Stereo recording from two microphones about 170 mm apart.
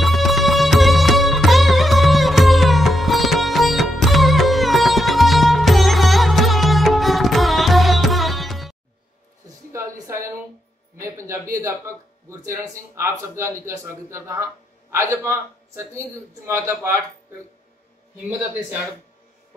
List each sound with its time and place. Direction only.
0.0 s music: centre (ahead or behind)
9.7 s a sound: 15° right (ahead or behind)
13.4 s a man's voice: 15° right (ahead or behind)